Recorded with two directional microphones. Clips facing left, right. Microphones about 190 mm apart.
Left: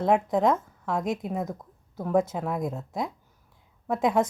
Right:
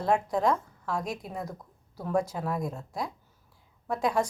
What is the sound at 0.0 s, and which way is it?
A woman's voice, 20° left (ahead or behind).